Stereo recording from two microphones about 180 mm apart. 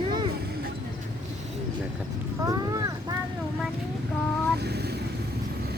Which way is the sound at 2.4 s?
20° right (ahead or behind).